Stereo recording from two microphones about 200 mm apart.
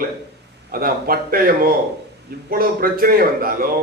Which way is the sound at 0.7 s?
45° right (ahead or behind).